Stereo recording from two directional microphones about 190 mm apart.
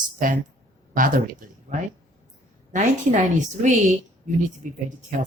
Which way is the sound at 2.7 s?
40° right (ahead or behind).